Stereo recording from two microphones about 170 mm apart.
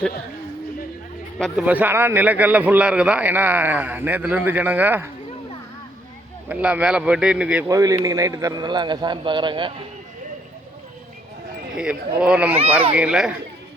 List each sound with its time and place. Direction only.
1.4 s a man's voice: centre (ahead or behind)
6.5 s speech: 10° right (ahead or behind)
7.7 s a man's voice: 20° right (ahead or behind)
11.8 s speech: 5° right (ahead or behind)